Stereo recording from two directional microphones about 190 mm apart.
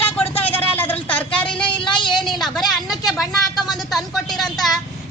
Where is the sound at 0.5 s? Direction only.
10° left (ahead or behind).